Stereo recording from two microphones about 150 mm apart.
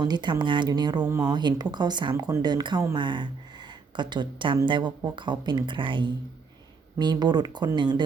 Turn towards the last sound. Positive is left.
turn(degrees=-30)  # may be behind; listen again after turning